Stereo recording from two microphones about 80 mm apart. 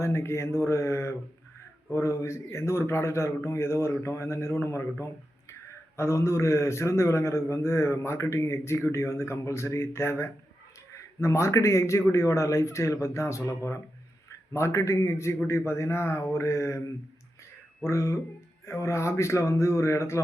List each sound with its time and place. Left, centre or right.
0.0 s a man's voice: left
17.8 s a man's voice: left